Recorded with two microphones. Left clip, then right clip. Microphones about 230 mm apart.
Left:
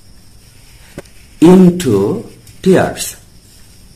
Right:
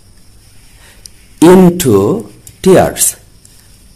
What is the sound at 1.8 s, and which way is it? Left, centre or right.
Speech, right.